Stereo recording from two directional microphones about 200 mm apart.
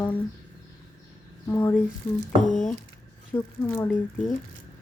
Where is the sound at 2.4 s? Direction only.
40° left (ahead or behind).